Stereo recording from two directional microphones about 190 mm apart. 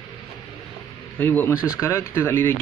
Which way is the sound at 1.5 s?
5° right (ahead or behind).